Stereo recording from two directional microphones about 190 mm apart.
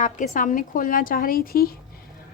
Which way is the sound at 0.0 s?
40° left (ahead or behind).